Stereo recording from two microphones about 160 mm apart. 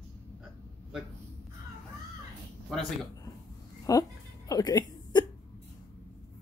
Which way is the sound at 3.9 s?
20° left (ahead or behind).